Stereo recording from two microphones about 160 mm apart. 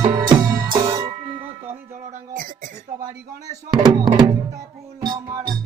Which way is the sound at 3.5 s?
30° right (ahead or behind).